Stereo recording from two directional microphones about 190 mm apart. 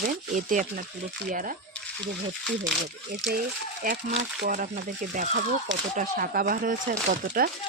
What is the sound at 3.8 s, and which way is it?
Speech, 50° right (ahead or behind).